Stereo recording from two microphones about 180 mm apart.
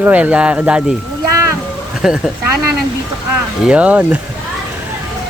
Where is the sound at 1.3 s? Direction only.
15° right (ahead or behind).